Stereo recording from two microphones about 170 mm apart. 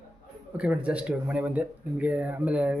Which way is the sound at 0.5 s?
5° right (ahead or behind).